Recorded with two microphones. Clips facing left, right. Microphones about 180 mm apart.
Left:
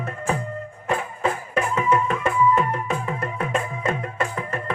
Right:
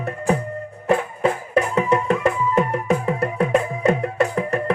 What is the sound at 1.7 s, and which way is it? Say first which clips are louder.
Music: right 3 dB; 40° right (ahead or behind).